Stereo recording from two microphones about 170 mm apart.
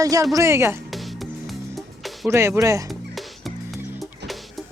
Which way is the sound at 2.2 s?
15° right (ahead or behind).